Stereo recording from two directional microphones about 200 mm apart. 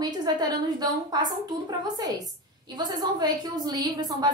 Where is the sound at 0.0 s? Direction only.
20° right (ahead or behind).